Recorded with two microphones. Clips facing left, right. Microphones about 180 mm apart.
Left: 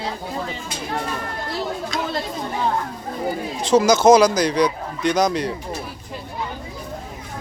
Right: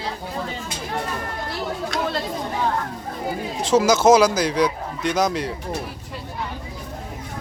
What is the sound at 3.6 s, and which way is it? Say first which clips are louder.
Speech: left 2 dB; 5° right (ahead or behind).